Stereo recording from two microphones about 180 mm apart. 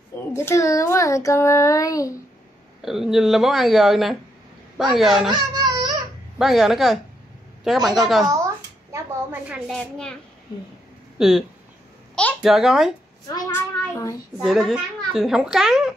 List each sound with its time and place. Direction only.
0.3 s a child's voice: 15° left (ahead or behind)
2.8 s a child's voice: centre (ahead or behind)
5.3 s a sound: 25° right (ahead or behind)
6.3 s a child's voice: centre (ahead or behind)
8.9 s a sound: 10° right (ahead or behind)
9.7 s a child's voice: 5° left (ahead or behind)
11.1 s speech: centre (ahead or behind)
12.4 s a child's voice: centre (ahead or behind)
13.3 s child singing: 15° left (ahead or behind)
14.4 s a child's voice: centre (ahead or behind)